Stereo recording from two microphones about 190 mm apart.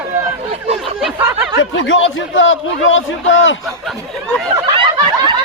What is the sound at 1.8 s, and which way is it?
A man's voice, 90° left.